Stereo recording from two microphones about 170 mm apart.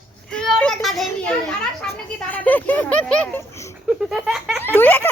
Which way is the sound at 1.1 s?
5° left (ahead or behind).